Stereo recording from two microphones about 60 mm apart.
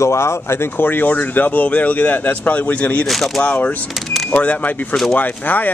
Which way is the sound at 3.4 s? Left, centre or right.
Left.